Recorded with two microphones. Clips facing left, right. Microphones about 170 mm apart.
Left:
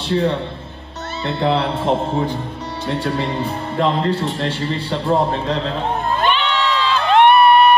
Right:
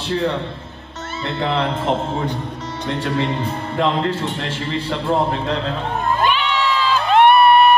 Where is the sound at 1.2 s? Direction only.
35° left (ahead or behind).